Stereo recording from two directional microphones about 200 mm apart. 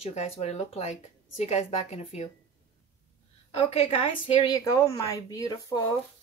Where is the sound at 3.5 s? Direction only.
30° left (ahead or behind).